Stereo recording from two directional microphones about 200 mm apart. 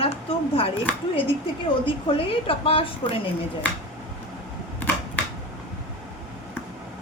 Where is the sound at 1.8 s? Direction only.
25° left (ahead or behind).